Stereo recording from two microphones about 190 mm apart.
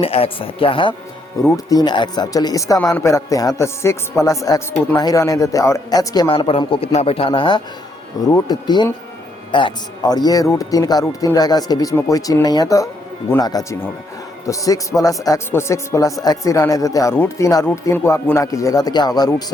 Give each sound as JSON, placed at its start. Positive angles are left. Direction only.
{"t": 0.0, "sound": "a man's voice", "side_deg": 30}